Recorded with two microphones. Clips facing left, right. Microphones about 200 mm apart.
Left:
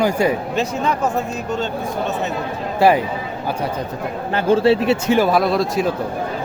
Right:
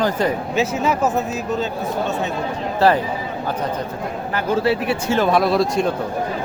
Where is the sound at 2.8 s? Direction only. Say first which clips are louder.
Left 2 dB; 15° left (ahead or behind).